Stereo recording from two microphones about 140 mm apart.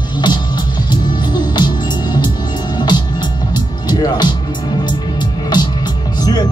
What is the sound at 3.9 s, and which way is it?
Music, 30° left (ahead or behind).